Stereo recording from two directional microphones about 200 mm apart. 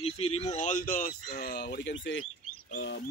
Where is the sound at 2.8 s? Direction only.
60° left (ahead or behind).